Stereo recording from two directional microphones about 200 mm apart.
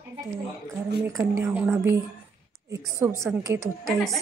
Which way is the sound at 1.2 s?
10° right (ahead or behind).